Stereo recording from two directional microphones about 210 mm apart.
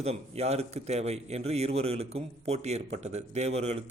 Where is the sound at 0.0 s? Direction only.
30° right (ahead or behind).